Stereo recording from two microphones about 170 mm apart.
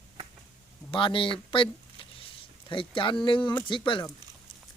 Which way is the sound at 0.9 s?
30° left (ahead or behind).